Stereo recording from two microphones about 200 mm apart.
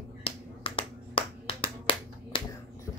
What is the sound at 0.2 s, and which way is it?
Finger snapping, 25° left (ahead or behind).